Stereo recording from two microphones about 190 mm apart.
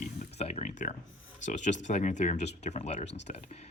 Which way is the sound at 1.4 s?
40° left (ahead or behind).